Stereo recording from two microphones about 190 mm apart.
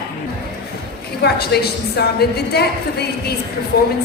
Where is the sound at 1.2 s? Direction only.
55° left (ahead or behind).